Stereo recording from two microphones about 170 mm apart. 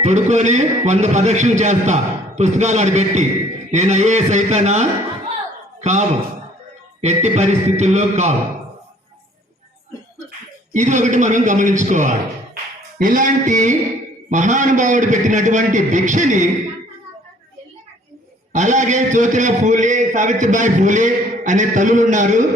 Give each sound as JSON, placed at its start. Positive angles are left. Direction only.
{"t": 0.0, "sound": "a man's voice", "side_deg": -45}
{"t": 10.8, "sound": "a man's voice", "side_deg": -45}
{"t": 18.5, "sound": "a man's voice", "side_deg": -45}